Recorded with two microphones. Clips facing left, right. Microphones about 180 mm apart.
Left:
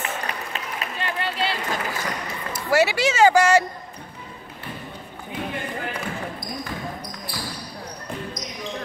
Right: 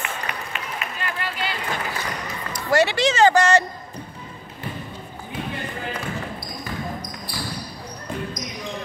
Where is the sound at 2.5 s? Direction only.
5° left (ahead or behind).